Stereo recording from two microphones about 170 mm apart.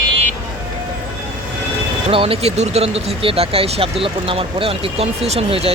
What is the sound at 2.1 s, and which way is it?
Speech, 35° right (ahead or behind).